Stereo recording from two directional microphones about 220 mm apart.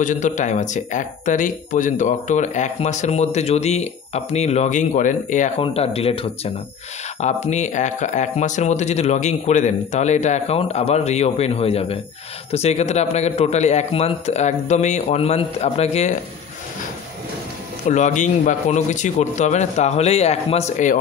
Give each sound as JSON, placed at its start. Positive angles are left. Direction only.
{"t": 0.0, "sound": "a man's voice", "side_deg": 35}
{"t": 17.8, "sound": "speech", "side_deg": 35}